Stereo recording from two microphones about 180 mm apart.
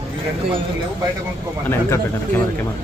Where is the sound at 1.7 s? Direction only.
15° left (ahead or behind).